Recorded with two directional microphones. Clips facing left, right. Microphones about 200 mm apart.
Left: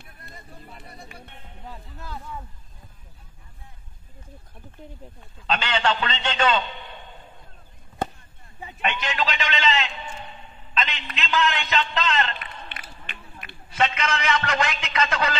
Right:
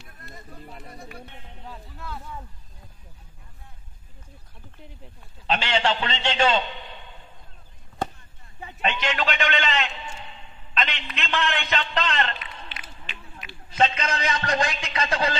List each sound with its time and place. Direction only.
5.5 s a man's voice: 25° right (ahead or behind)
8.8 s a man's voice: 45° right (ahead or behind)
11.1 s a man's voice: 45° right (ahead or behind)
12.4 s run: 55° left (ahead or behind)
13.7 s a man's voice: 35° right (ahead or behind)